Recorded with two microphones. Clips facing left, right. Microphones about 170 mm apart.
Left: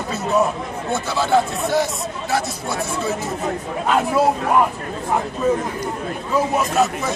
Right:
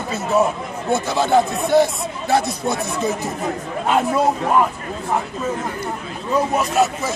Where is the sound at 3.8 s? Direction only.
Centre (ahead or behind).